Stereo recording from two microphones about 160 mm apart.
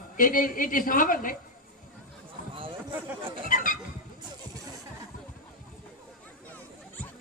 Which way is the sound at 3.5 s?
60° left (ahead or behind).